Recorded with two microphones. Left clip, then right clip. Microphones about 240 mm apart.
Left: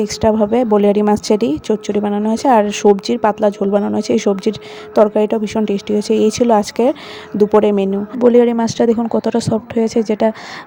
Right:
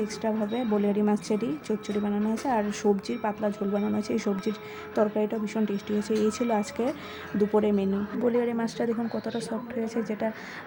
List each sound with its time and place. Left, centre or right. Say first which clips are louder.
0.0 s speech: left 15 dB; left